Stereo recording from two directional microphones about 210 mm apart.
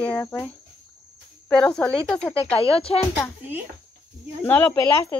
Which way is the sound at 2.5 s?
25° left (ahead or behind).